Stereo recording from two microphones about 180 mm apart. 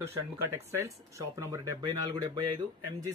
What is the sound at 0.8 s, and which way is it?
Speech, 15° right (ahead or behind).